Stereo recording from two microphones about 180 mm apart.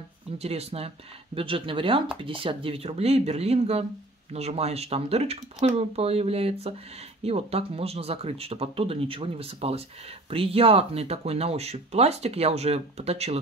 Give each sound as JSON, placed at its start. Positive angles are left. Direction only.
{"t": 0.4, "sound": "speech", "side_deg": -35}